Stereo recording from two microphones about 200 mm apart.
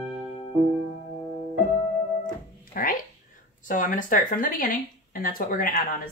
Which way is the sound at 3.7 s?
40° left (ahead or behind).